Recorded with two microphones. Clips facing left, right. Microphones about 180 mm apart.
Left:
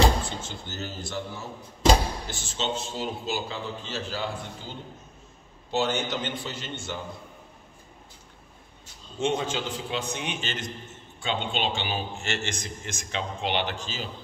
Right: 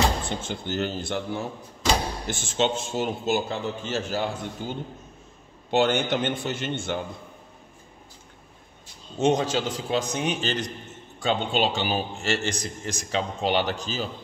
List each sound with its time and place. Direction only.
0.4 s a man's voice: 55° right (ahead or behind)
9.2 s a man's voice: 40° right (ahead or behind)